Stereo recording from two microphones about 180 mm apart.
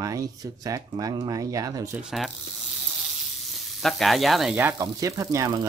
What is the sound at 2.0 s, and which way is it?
Speech, centre (ahead or behind).